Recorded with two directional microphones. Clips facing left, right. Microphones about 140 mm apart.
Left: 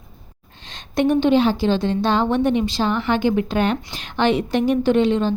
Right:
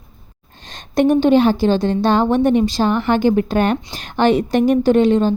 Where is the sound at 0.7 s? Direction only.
45° right (ahead or behind).